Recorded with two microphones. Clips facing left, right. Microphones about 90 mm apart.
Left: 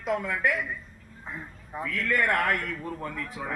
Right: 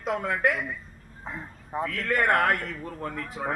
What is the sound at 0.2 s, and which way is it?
A man's voice, 45° right (ahead or behind).